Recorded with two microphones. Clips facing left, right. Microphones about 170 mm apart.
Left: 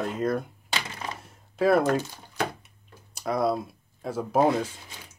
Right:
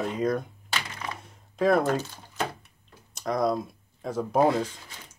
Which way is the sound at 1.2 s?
5° left (ahead or behind).